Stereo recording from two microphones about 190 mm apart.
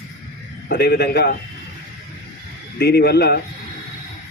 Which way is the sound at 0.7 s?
60° left (ahead or behind).